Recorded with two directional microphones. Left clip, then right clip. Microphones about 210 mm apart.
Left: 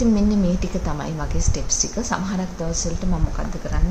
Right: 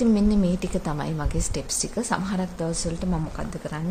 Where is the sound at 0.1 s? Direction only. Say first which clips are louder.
Left 2 dB; 50° right (ahead or behind).